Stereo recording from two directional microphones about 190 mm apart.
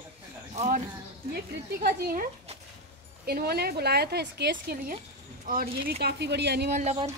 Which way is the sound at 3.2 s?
55° right (ahead or behind).